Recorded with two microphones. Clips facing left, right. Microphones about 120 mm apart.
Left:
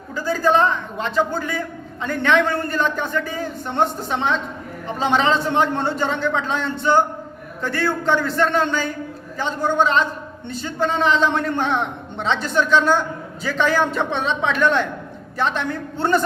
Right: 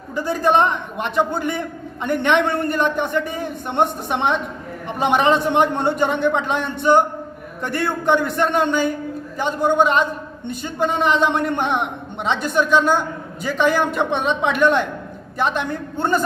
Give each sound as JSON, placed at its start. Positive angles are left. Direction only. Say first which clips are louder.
{"t": 0.2, "sound": "a man's voice", "louder": "right 1 dB", "side_deg": -20}